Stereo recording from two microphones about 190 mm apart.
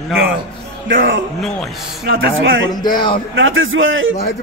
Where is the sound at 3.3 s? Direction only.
90° right.